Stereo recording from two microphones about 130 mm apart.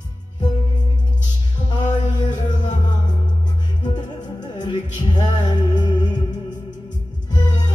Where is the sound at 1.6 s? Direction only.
35° left (ahead or behind).